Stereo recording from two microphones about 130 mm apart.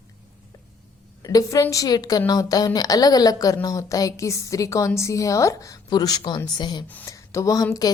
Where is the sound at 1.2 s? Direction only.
30° left (ahead or behind).